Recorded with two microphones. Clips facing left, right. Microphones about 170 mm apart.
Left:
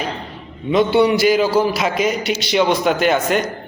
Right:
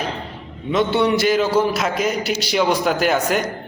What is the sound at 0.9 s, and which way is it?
A man's voice, 5° left (ahead or behind).